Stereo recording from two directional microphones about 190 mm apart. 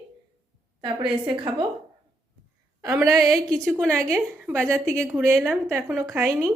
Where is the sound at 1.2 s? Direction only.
25° right (ahead or behind).